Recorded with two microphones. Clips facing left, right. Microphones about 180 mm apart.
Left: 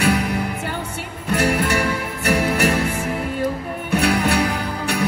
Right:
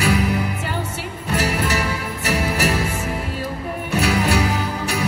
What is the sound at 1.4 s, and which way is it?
Music, 60° left (ahead or behind).